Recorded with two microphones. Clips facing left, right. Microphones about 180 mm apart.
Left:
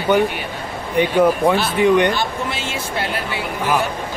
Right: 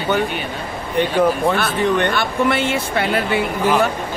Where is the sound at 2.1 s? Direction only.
60° right (ahead or behind).